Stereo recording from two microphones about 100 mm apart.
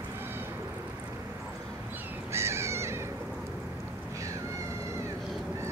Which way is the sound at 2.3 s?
25° right (ahead or behind).